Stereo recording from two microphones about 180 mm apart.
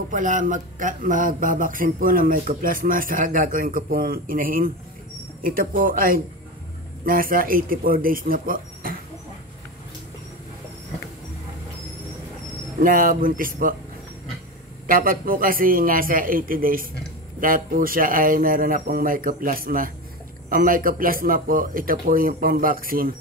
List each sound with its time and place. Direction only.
0.1 s speech: 45° right (ahead or behind)
12.8 s speech: 50° right (ahead or behind)
14.9 s speech: 50° right (ahead or behind)